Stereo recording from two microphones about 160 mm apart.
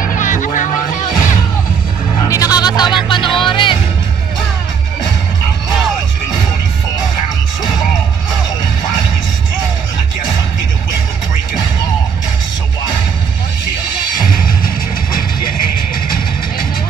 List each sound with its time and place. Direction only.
0.0 s music: 55° left (ahead or behind)
2.2 s music: 20° left (ahead or behind)